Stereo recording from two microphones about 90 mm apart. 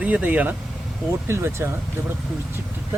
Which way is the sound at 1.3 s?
30° right (ahead or behind).